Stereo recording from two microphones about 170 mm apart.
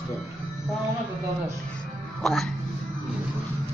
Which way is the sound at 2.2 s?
Centre (ahead or behind).